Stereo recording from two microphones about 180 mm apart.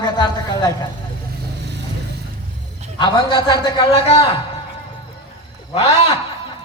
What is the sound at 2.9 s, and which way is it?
A man's voice, 25° left (ahead or behind).